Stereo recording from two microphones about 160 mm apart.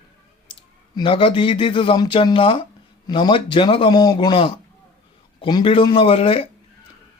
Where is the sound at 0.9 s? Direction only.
30° left (ahead or behind).